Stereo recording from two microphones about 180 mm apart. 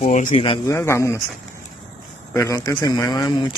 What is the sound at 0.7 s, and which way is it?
Speech, 15° left (ahead or behind).